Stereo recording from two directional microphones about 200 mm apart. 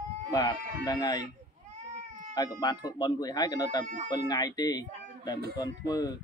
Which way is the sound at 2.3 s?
20° left (ahead or behind).